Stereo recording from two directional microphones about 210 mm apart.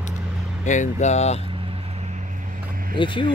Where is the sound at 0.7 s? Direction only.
35° left (ahead or behind).